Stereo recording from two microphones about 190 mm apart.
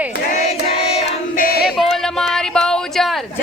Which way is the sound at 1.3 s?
50° left (ahead or behind).